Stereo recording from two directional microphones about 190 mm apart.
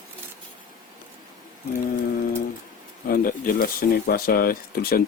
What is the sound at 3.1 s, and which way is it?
Speech, 50° left (ahead or behind).